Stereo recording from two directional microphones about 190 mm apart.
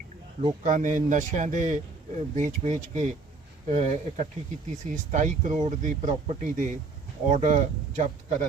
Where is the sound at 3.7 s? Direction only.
40° right (ahead or behind).